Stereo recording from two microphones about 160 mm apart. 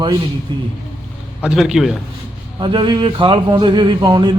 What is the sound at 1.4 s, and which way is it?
Speech, 5° right (ahead or behind).